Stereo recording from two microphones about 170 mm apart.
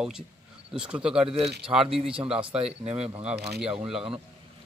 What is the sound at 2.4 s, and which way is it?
Speech, 35° right (ahead or behind).